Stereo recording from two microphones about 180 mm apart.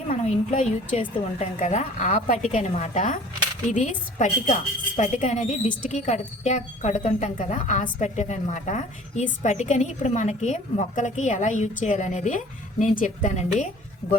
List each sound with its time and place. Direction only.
0.1 s a woman's voice: 40° left (ahead or behind)